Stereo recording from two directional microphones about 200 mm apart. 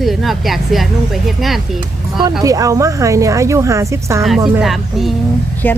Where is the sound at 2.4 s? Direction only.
15° right (ahead or behind).